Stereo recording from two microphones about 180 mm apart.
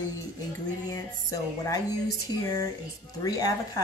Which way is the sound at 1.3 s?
20° left (ahead or behind).